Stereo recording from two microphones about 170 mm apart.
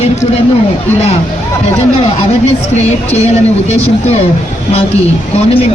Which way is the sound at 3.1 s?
40° left (ahead or behind).